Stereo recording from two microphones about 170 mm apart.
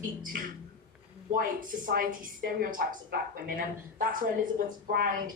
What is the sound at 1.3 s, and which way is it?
A woman's voice, 50° right (ahead or behind).